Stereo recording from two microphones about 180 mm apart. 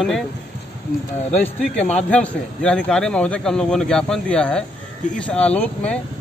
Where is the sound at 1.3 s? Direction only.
10° left (ahead or behind).